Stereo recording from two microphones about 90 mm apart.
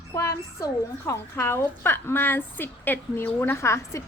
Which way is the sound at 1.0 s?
30° left (ahead or behind).